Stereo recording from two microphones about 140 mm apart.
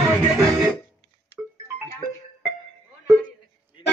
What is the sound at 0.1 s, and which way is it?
Music, 5° right (ahead or behind).